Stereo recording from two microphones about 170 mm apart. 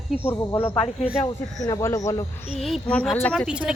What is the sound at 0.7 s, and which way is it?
Speech, 35° left (ahead or behind).